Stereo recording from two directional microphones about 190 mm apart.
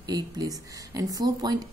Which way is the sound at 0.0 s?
20° right (ahead or behind).